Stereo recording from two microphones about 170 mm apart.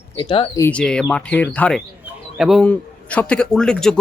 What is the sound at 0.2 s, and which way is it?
Speech, 25° left (ahead or behind).